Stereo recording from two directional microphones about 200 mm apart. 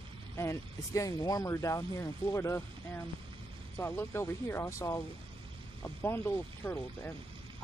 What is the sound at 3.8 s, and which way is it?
Speech, 10° left (ahead or behind).